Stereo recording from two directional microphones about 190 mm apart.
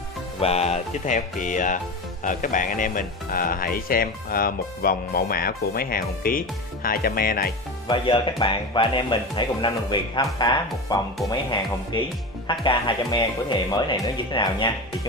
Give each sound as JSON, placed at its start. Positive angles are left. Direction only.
{"t": 0.4, "sound": "music", "side_deg": 35}
{"t": 2.2, "sound": "speech", "side_deg": 45}
{"t": 7.9, "sound": "speech", "side_deg": 25}